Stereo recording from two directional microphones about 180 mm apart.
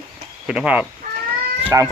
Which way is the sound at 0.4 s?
5° right (ahead or behind).